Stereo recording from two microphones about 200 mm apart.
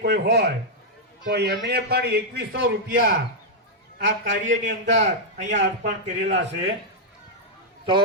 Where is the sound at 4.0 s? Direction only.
65° right (ahead or behind).